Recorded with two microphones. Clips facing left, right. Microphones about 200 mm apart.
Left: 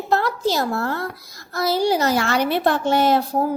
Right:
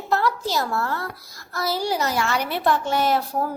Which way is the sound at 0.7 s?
40° left (ahead or behind).